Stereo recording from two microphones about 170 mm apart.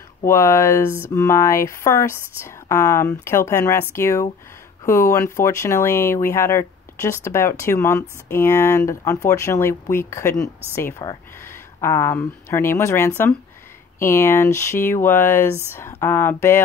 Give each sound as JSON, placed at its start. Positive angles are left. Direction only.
{"t": 0.2, "sound": "speech", "side_deg": 15}